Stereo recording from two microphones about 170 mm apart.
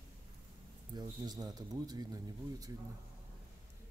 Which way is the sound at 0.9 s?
25° right (ahead or behind).